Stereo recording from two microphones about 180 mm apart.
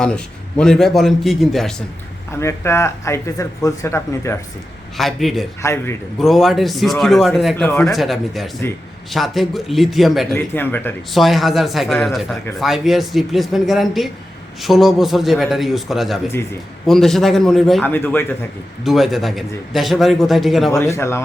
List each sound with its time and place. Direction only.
0.0 s a man's voice: 5° left (ahead or behind)
2.3 s speech: 15° left (ahead or behind)
4.9 s a man's voice: centre (ahead or behind)
5.6 s speech: 15° left (ahead or behind)
6.1 s a man's voice: centre (ahead or behind)
7.5 s a man's voice: 10° left (ahead or behind)
10.3 s speech: 10° left (ahead or behind)
11.1 s a man's voice: centre (ahead or behind)
17.9 s speech: 10° left (ahead or behind)
18.9 s a man's voice: centre (ahead or behind)
20.7 s speech: 15° left (ahead or behind)